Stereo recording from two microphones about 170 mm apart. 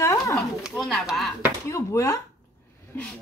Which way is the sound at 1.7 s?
15° left (ahead or behind).